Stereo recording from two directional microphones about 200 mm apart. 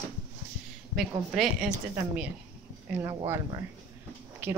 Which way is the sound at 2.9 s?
15° right (ahead or behind).